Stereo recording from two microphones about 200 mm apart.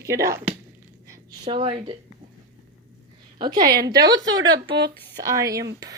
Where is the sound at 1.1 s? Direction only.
25° right (ahead or behind).